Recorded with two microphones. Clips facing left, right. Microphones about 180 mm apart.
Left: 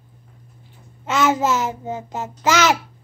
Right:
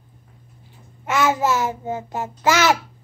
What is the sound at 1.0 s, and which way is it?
Babbling, 20° left (ahead or behind).